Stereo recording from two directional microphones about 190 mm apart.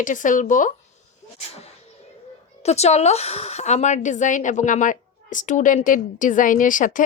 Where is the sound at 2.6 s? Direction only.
35° left (ahead or behind).